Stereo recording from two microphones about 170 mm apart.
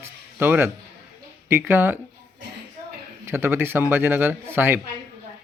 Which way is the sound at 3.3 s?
15° right (ahead or behind).